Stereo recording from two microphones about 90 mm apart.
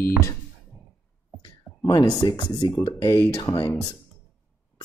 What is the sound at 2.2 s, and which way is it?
Speech, 40° left (ahead or behind).